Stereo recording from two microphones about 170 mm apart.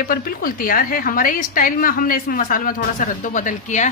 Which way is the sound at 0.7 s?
55° left (ahead or behind).